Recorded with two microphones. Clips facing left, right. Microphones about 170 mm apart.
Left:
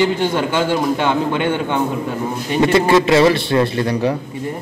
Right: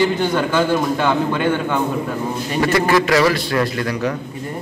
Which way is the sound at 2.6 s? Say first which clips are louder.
Left 3 dB; 25° left (ahead or behind).